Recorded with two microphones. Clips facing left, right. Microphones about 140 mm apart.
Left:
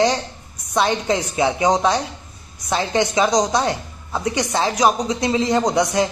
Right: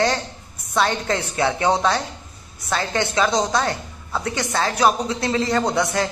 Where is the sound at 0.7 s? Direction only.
15° left (ahead or behind).